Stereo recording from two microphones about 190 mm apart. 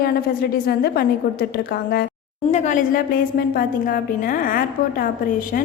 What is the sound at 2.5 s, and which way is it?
A woman's voice, 40° left (ahead or behind).